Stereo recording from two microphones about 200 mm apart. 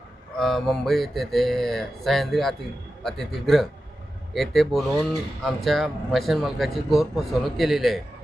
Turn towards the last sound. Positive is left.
turn(degrees=0)  # may be behind; listen again after turning